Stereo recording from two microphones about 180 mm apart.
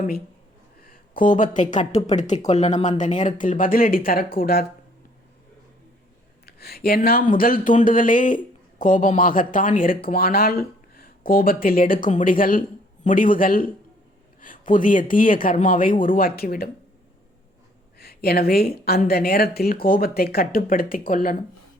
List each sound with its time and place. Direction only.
0.8 s speech: 50° left (ahead or behind)
6.4 s speech: 60° left (ahead or behind)
17.9 s speech: 60° left (ahead or behind)